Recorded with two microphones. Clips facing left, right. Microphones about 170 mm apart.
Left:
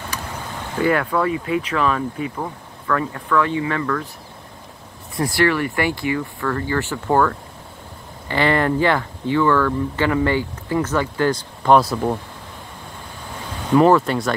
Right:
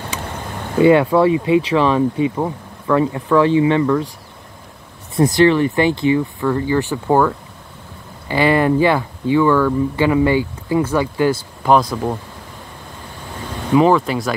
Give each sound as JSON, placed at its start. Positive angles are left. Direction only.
{"t": 0.8, "sound": "speech", "side_deg": -25}
{"t": 5.1, "sound": "speech", "side_deg": -20}
{"t": 13.7, "sound": "speech", "side_deg": 0}